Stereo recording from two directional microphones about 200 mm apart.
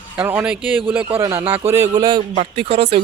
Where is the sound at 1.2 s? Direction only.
25° right (ahead or behind).